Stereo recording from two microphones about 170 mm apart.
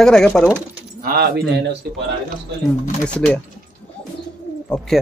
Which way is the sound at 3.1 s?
5° left (ahead or behind).